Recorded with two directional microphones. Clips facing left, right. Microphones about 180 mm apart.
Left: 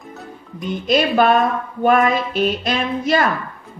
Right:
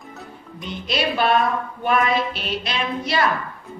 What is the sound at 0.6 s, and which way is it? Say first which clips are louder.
A woman's voice: left 7 dB; 45° left (ahead or behind).